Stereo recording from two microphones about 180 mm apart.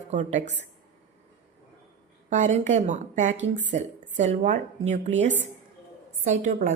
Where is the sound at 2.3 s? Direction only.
40° right (ahead or behind).